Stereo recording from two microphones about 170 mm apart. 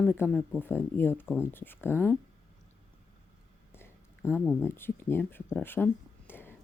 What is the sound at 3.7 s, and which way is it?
Speech, 15° left (ahead or behind).